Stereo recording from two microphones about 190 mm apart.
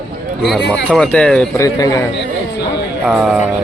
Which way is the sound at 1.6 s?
15° left (ahead or behind).